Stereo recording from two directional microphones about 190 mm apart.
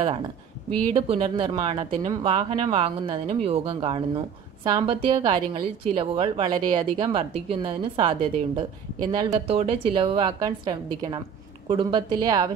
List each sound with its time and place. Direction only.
0.9 s a woman's voice: 30° right (ahead or behind)